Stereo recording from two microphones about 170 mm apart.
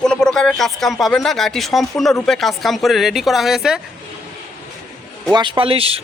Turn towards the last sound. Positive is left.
turn(degrees=-35)  # may be behind; listen again after turning